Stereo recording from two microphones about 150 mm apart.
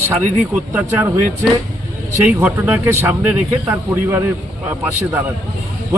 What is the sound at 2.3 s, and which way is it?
A man's voice, 15° right (ahead or behind).